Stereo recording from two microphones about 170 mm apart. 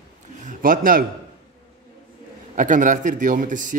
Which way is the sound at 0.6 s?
55° right (ahead or behind).